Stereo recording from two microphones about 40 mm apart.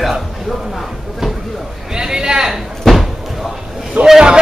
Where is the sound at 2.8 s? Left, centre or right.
Centre.